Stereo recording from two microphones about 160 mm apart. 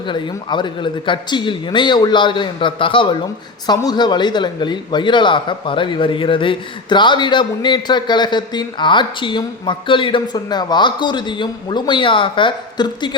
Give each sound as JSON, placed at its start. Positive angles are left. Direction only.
{"t": 0.1, "sound": "speech", "side_deg": 30}